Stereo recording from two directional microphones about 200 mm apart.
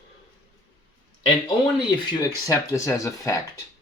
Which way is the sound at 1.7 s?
20° left (ahead or behind).